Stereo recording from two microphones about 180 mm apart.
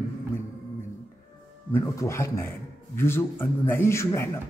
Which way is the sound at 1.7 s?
15° left (ahead or behind).